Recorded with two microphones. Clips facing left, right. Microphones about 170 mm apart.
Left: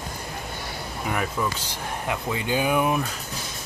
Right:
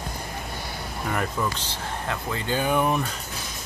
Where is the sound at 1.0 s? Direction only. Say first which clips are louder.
Even; 5° left (ahead or behind).